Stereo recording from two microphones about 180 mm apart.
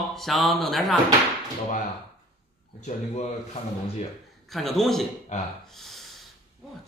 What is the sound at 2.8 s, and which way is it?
Speech, 40° left (ahead or behind).